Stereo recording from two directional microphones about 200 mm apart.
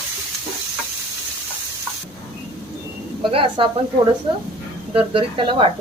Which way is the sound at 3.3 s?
25° right (ahead or behind).